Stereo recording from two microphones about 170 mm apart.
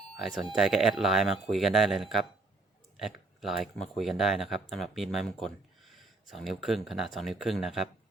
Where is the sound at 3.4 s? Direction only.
Centre (ahead or behind).